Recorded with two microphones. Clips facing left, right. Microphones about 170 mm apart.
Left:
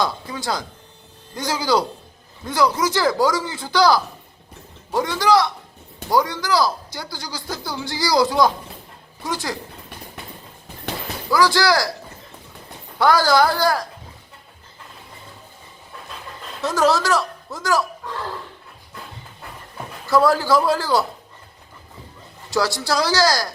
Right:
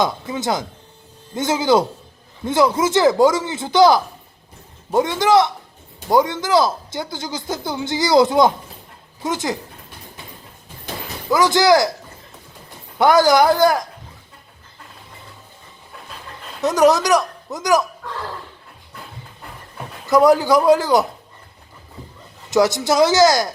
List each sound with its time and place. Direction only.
0.0 s speech: 20° right (ahead or behind)
11.3 s speech: 20° right (ahead or behind)
13.0 s speech: 20° right (ahead or behind)
16.6 s speech: 20° right (ahead or behind)
20.1 s speech: 20° right (ahead or behind)
22.4 s speech: 20° right (ahead or behind)